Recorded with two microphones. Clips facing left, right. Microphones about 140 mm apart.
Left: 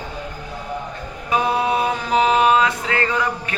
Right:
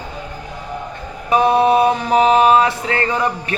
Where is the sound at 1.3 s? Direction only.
25° right (ahead or behind).